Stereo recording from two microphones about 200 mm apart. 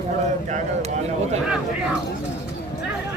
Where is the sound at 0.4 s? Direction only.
35° right (ahead or behind).